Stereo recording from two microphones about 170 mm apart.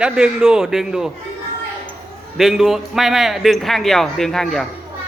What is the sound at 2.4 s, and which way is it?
A man's voice, centre (ahead or behind).